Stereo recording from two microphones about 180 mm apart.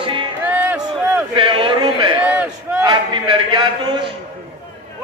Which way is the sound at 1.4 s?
30° right (ahead or behind).